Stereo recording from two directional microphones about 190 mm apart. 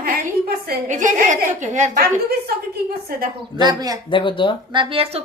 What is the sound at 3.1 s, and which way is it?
Speech, 50° right (ahead or behind).